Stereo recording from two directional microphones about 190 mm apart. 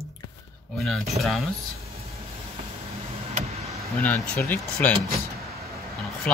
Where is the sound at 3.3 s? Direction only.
35° right (ahead or behind).